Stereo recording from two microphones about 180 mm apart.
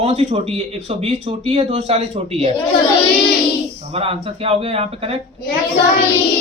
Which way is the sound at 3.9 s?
30° right (ahead or behind).